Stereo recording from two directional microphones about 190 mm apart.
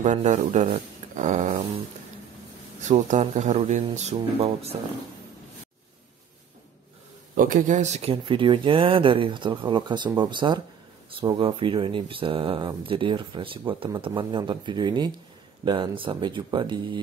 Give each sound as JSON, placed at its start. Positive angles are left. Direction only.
{"t": 0.0, "sound": "speech", "side_deg": -40}
{"t": 2.8, "sound": "speech", "side_deg": -40}
{"t": 7.3, "sound": "speech", "side_deg": -45}